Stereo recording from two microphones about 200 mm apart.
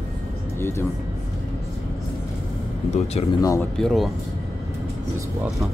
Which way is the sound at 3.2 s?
30° left (ahead or behind).